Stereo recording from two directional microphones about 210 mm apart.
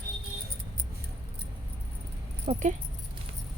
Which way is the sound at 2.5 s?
35° right (ahead or behind).